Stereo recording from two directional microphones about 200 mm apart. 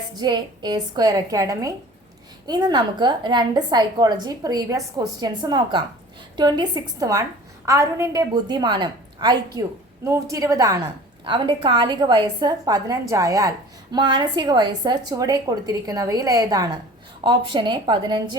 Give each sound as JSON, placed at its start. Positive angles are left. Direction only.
{"t": 0.2, "sound": "a woman's voice", "side_deg": -20}